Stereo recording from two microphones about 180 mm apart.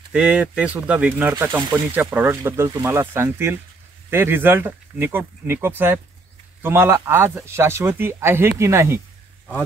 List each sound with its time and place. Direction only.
0.1 s speech: 5° right (ahead or behind)